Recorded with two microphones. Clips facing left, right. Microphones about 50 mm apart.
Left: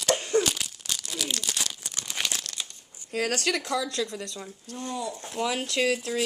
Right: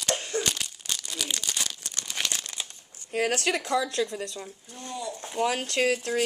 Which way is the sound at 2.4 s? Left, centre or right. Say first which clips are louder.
Even; centre.